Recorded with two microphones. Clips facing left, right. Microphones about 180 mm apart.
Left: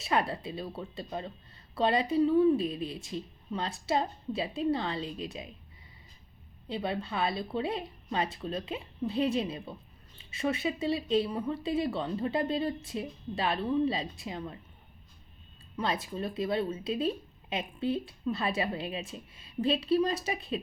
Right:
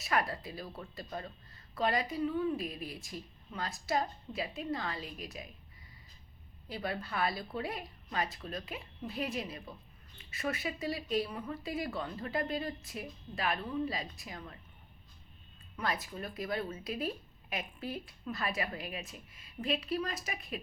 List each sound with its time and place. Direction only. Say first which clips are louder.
0.0 s speech: left 4 dB; 25° left (ahead or behind)
6.7 s speech: left 5 dB; 25° left (ahead or behind)
15.8 s speech: left 5 dB; 25° left (ahead or behind)